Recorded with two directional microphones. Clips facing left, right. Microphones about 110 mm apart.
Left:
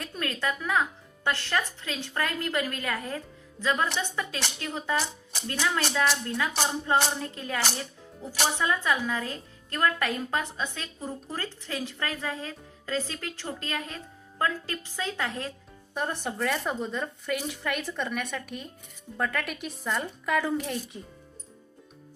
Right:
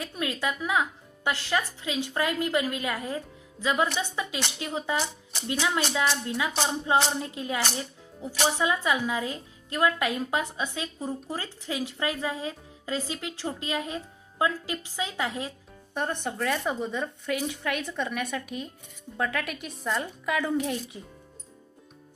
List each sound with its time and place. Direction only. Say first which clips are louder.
0.0 s speech: right 1 dB; 10° right (ahead or behind)
16.0 s speech: right 1 dB; centre (ahead or behind)